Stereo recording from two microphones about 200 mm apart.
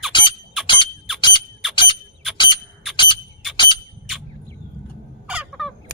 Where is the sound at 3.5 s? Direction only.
25° left (ahead or behind).